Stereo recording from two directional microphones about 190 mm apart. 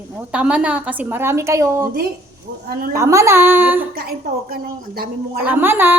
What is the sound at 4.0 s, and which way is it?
A woman's voice, 50° right (ahead or behind).